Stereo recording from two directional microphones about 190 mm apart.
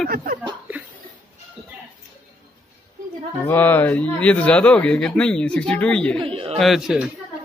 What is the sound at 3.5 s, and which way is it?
Speech, 10° left (ahead or behind).